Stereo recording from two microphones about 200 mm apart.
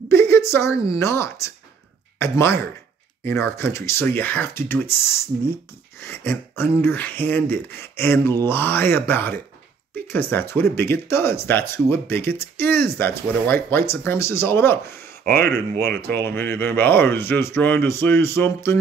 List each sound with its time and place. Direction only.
0.1 s a woman's voice: 15° left (ahead or behind)